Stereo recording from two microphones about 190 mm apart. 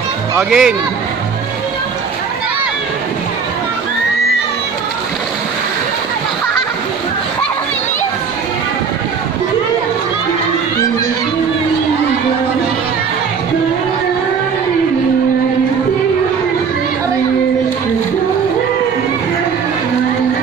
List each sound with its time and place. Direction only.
0.4 s speech: 5° right (ahead or behind)